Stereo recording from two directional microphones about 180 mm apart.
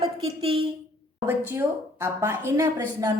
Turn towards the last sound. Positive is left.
turn(degrees=-15)  # may be behind; listen again after turning